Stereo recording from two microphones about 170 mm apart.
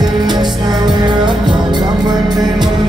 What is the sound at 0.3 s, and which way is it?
Music, 25° right (ahead or behind).